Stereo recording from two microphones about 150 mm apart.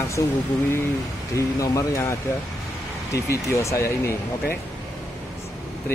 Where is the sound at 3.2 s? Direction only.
20° left (ahead or behind).